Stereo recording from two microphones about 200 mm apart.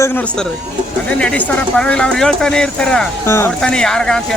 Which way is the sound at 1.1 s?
5° left (ahead or behind).